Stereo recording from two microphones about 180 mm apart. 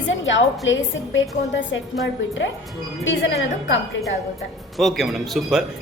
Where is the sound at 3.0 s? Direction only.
90° left.